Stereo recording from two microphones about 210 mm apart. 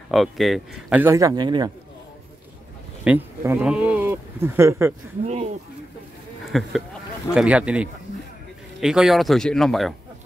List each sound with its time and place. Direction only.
0.1 s speech: centre (ahead or behind); by 1.7 s 20° right (ahead or behind)
3.0 s speech: 10° right (ahead or behind)
5.2 s speech: 30° right (ahead or behind)
6.5 s speech: centre (ahead or behind)